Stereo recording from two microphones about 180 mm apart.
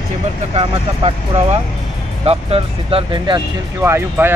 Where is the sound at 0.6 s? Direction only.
35° right (ahead or behind).